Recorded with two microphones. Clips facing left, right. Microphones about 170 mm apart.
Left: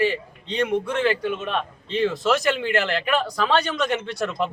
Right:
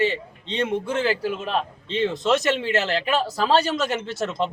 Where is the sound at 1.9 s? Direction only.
Centre (ahead or behind).